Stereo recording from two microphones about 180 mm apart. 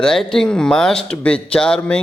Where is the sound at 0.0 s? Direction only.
5° left (ahead or behind).